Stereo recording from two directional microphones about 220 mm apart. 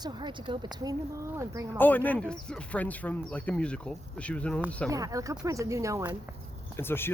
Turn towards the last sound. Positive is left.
turn(degrees=10)  # may be behind; listen again after turning